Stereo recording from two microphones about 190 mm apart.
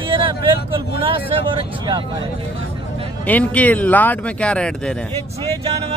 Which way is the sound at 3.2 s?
10° left (ahead or behind).